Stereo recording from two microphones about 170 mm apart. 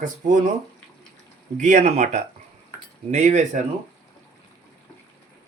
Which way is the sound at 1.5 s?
45° right (ahead or behind).